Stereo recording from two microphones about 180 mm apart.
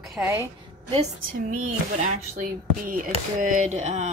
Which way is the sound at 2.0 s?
45° right (ahead or behind).